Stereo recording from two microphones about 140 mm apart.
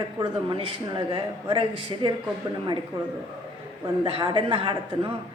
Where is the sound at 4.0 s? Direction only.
40° right (ahead or behind).